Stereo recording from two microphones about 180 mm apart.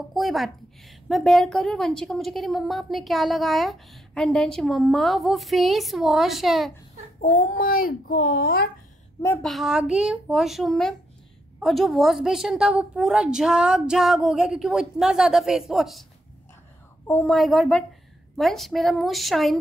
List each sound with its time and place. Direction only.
0.1 s a woman's voice: centre (ahead or behind)
7.4 s a child's voice: 50° left (ahead or behind)
9.4 s a woman's voice: centre (ahead or behind)
17.1 s a woman's voice: 5° left (ahead or behind)